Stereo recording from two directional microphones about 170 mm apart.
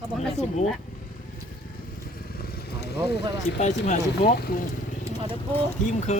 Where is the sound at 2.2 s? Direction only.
60° left (ahead or behind).